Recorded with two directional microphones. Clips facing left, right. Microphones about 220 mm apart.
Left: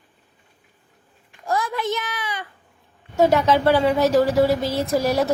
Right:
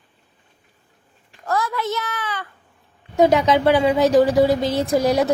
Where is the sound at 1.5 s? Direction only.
15° left (ahead or behind).